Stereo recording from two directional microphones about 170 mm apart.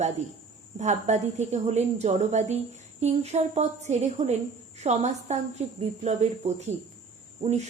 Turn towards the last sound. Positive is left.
turn(degrees=-40)  # may be behind; listen again after turning